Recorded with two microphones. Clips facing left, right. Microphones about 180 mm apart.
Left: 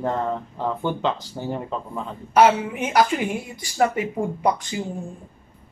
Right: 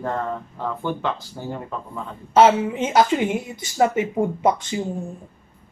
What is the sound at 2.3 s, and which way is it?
A woman's voice, 25° right (ahead or behind).